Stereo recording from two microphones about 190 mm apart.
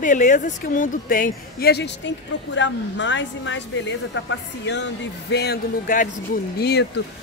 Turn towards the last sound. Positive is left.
turn(degrees=60)  # may be behind; listen again after turning